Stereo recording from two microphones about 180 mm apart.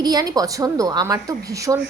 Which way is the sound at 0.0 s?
20° right (ahead or behind).